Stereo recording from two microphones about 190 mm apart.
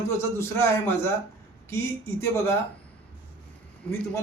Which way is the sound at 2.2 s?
10° left (ahead or behind).